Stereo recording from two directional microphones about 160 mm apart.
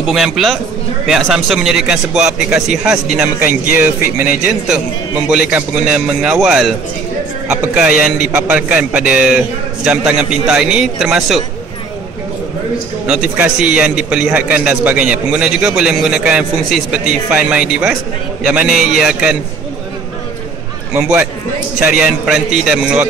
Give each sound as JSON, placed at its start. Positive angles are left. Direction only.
{"t": 0.0, "sound": "a man's voice", "side_deg": 0}
{"t": 4.0, "sound": "speech", "side_deg": 65}
{"t": 4.6, "sound": "a man's voice", "side_deg": -5}
{"t": 13.4, "sound": "a man's voice", "side_deg": -5}
{"t": 20.9, "sound": "a man's voice", "side_deg": -5}